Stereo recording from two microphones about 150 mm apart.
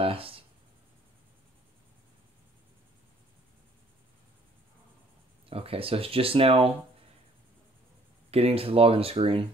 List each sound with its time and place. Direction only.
0.0 s a sound: 40° right (ahead or behind)
5.5 s speech: 40° right (ahead or behind)
8.3 s speech: 40° right (ahead or behind)